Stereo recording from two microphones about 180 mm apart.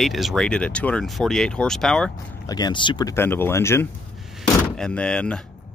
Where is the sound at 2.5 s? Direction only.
25° left (ahead or behind).